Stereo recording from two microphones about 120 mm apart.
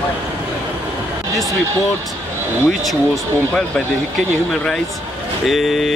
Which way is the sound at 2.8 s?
Centre (ahead or behind).